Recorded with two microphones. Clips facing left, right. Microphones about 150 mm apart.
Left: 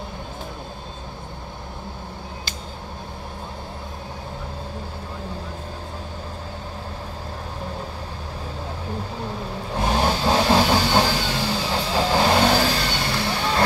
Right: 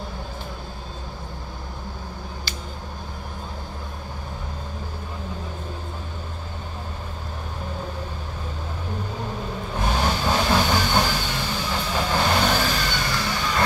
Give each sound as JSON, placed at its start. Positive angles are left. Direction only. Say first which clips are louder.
{"t": 9.8, "sound": "vehicle", "louder": "left 3 dB", "side_deg": 35}